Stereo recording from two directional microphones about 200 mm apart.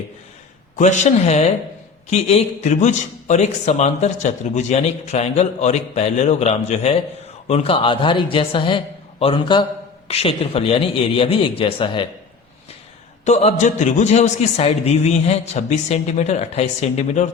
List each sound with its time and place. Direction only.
0.8 s a man's voice: 35° left (ahead or behind)
13.2 s a man's voice: 35° left (ahead or behind)